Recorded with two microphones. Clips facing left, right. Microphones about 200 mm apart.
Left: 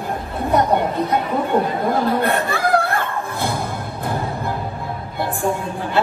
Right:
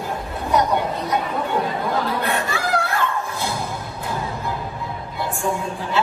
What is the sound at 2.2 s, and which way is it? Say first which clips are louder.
Snicker: left 4 dB; 55° left (ahead or behind).